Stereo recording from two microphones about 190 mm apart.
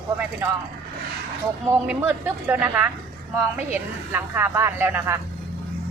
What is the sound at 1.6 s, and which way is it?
Speech, 10° right (ahead or behind).